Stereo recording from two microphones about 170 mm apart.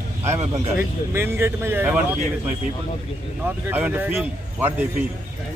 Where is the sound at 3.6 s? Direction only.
10° right (ahead or behind).